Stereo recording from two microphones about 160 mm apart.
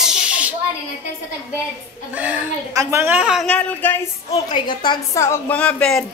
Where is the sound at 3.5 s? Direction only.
10° left (ahead or behind).